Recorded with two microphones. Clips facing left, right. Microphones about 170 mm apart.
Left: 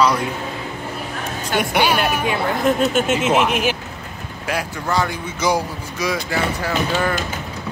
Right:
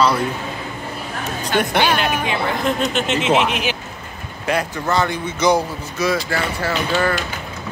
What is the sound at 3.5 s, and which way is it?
Speech, 50° left (ahead or behind).